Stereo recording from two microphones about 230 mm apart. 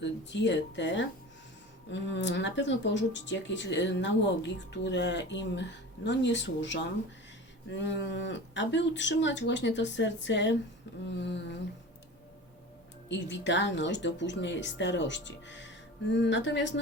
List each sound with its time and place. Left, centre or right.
0.0 s a woman's voice: left
13.1 s a woman's voice: left